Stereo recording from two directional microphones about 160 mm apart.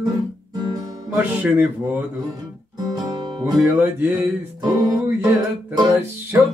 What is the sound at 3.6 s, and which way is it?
Music, 15° right (ahead or behind).